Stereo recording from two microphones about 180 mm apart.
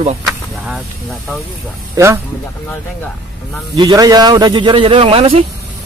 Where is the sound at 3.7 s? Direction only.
20° right (ahead or behind).